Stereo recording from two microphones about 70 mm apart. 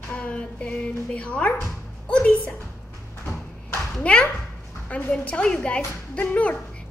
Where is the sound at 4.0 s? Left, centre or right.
Centre.